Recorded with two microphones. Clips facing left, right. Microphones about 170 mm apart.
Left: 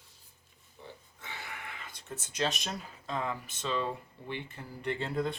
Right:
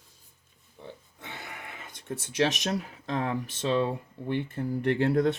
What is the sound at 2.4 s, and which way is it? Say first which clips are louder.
Speech: right 7 dB; 80° right.